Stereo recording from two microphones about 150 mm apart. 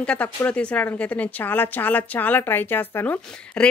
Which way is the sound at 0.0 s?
10° left (ahead or behind).